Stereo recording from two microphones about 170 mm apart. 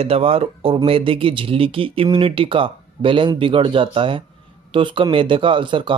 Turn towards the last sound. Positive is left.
turn(degrees=-30)  # may be behind; listen again after turning